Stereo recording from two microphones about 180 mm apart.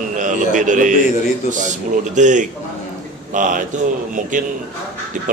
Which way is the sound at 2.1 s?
45° right (ahead or behind).